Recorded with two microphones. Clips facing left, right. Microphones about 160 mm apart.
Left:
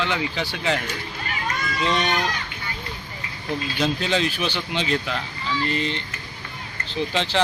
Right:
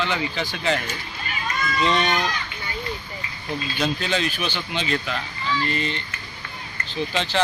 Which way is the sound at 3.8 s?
20° left (ahead or behind).